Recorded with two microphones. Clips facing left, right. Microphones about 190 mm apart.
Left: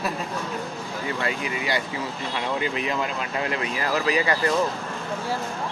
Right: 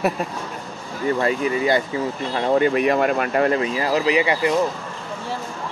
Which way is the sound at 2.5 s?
55° right (ahead or behind).